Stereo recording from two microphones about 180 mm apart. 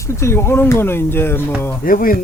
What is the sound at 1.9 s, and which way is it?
Speech, 50° left (ahead or behind).